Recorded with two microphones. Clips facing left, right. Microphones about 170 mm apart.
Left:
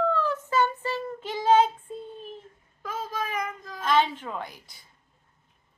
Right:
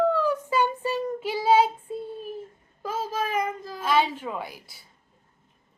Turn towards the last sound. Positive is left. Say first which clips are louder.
# right 2 dB
turn(degrees=-5)  # may be behind; listen again after turning